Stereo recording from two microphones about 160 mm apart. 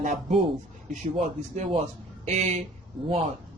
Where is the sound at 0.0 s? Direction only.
50° right (ahead or behind).